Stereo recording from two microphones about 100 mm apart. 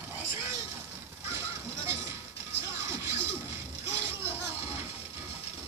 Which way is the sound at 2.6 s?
25° right (ahead or behind).